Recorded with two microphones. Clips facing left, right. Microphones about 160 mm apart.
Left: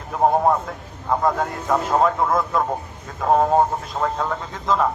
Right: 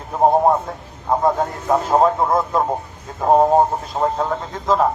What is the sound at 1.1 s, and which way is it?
A man's voice, 30° right (ahead or behind).